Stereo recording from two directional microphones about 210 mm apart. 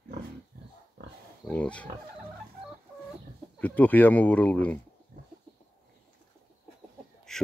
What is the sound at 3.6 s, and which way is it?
Speech, 5° left (ahead or behind).